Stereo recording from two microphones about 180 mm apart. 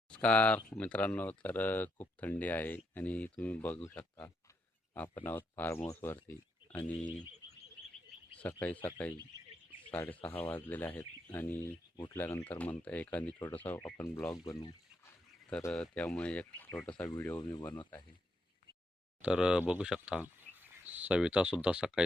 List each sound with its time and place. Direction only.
0.1 s speech: 5° left (ahead or behind)
8.4 s speech: 10° left (ahead or behind)
9.9 s speech: 10° left (ahead or behind)
15.7 s speech: 5° left (ahead or behind); by 17.7 s 20° left (ahead or behind)
17.9 s speech: 5° left (ahead or behind)
19.2 s speech: 5° right (ahead or behind)